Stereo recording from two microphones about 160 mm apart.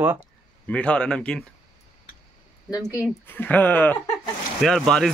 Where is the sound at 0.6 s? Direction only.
5° left (ahead or behind).